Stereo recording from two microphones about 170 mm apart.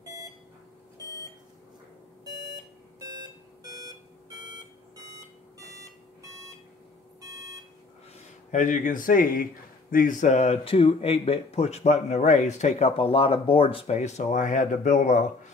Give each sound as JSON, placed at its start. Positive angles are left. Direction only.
{"t": 2.2, "sound": "alarm clock", "side_deg": -20}
{"t": 8.5, "sound": "a man's voice", "side_deg": 50}